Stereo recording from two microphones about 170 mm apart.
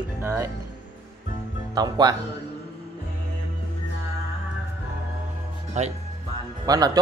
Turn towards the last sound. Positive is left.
turn(degrees=-25)  # may be behind; listen again after turning